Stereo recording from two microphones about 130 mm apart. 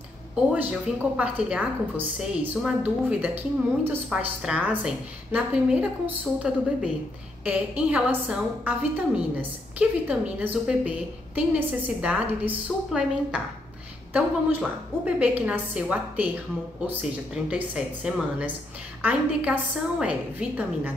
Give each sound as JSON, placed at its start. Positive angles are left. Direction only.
{"t": 1.1, "sound": "a woman's voice", "side_deg": -10}